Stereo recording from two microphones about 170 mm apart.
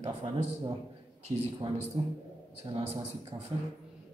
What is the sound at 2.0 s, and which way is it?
Speech, 35° right (ahead or behind).